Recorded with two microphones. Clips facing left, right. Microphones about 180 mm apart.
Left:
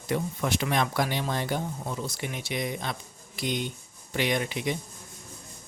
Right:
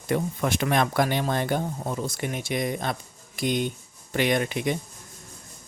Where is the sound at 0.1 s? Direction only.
55° right (ahead or behind).